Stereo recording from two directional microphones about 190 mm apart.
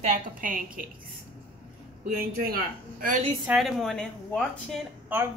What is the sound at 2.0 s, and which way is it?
Speech, 50° right (ahead or behind).